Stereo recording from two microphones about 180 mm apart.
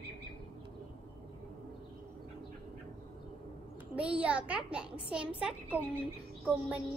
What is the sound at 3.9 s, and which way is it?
A child's voice, 5° right (ahead or behind).